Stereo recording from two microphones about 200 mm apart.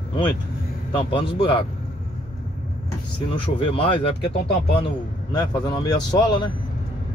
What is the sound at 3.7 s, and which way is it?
Speech, 25° left (ahead or behind).